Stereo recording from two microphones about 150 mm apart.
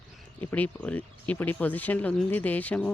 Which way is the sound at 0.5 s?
10° left (ahead or behind).